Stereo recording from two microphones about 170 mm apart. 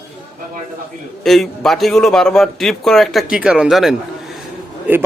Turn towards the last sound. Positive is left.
turn(degrees=-10)  # may be behind; listen again after turning